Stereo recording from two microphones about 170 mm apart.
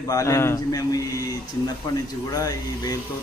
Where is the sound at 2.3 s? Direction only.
20° left (ahead or behind).